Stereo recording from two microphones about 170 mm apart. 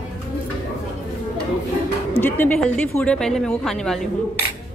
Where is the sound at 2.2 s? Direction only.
10° left (ahead or behind).